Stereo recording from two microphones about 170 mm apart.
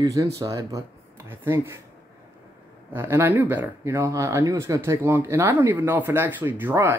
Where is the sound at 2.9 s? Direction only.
15° right (ahead or behind).